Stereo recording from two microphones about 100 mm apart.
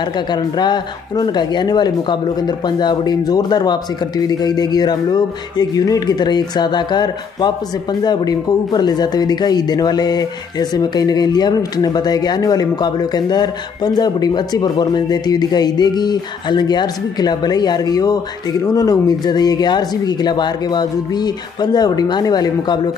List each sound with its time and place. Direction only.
0.3 s speech: 45° left (ahead or behind)